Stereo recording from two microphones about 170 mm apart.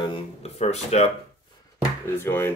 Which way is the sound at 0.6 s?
40° left (ahead or behind).